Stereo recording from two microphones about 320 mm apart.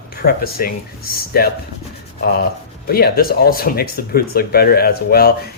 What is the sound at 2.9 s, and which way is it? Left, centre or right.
Speech, left.